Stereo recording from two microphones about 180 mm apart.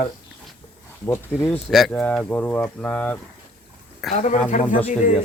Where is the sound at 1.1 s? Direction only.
15° left (ahead or behind).